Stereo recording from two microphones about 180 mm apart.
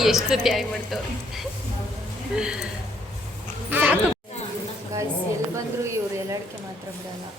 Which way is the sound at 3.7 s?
10° right (ahead or behind).